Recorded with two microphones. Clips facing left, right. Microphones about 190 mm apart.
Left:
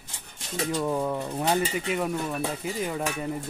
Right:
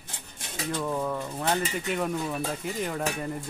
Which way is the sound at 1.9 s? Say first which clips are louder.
Left 1 dB; centre (ahead or behind).